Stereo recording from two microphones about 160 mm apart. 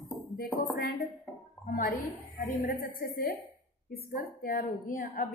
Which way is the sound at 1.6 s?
65° left (ahead or behind).